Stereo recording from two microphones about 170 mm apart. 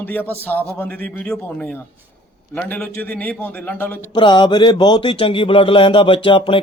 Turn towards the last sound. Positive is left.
turn(degrees=30)  # may be behind; listen again after turning